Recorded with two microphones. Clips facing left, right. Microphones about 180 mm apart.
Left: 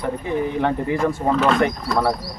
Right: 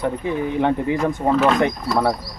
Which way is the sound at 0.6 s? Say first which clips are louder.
Right 3 dB; 20° right (ahead or behind).